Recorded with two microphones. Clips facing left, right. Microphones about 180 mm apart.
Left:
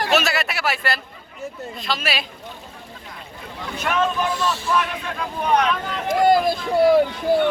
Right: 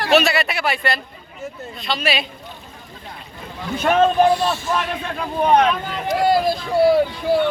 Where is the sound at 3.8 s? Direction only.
30° right (ahead or behind).